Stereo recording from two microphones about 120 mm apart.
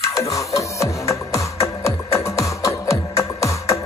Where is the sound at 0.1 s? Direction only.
25° left (ahead or behind).